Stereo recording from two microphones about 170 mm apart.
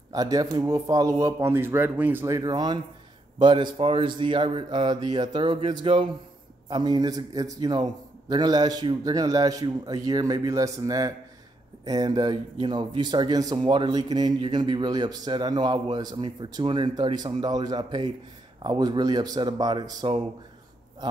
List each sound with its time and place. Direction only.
0.1 s speech: 20° right (ahead or behind)